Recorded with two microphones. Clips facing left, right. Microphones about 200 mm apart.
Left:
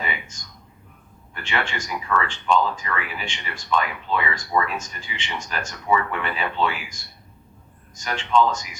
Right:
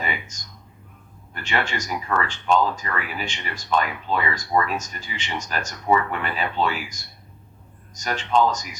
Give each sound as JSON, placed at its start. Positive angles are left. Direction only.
{"t": 0.3, "sound": "speech", "side_deg": -40}